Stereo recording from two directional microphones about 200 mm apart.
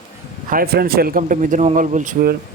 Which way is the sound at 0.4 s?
45° right (ahead or behind).